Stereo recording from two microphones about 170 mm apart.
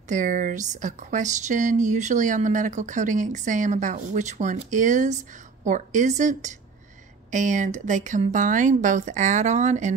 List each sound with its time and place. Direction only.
0.1 s speech: 50° right (ahead or behind)